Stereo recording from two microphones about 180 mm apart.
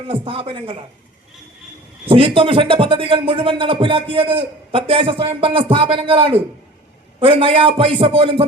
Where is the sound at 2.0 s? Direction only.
30° right (ahead or behind).